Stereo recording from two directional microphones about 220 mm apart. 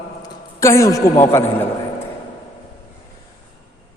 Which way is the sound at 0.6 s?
15° left (ahead or behind).